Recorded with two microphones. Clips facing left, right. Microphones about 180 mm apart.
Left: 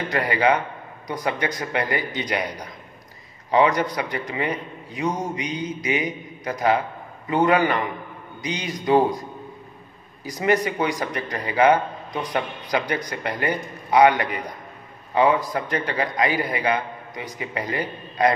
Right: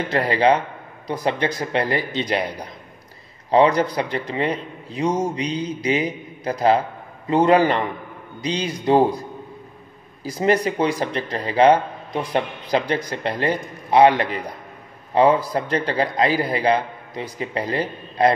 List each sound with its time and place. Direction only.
0.1 s a man's voice: 30° right (ahead or behind)
10.3 s a man's voice: 30° right (ahead or behind)